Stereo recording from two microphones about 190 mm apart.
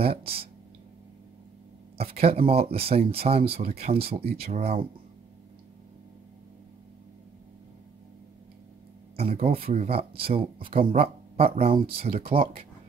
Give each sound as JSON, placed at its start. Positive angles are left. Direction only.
{"t": 0.0, "sound": "speech", "side_deg": -30}
{"t": 2.0, "sound": "speech", "side_deg": -30}
{"t": 9.1, "sound": "speech", "side_deg": -30}